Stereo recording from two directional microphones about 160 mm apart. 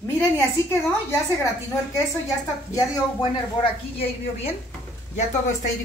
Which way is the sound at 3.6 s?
35° left (ahead or behind).